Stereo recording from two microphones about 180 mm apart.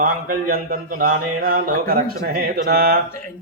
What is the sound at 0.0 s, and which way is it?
A man's voice, 50° right (ahead or behind).